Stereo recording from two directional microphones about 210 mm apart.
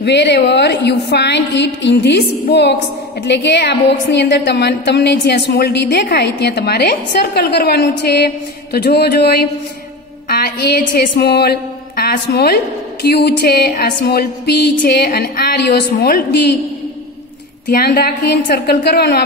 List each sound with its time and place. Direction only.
0.0 s a woman's voice: 55° left (ahead or behind)
17.6 s a woman's voice: 45° left (ahead or behind)